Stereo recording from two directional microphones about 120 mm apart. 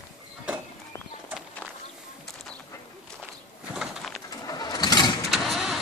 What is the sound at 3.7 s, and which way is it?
Bird, centre (ahead or behind).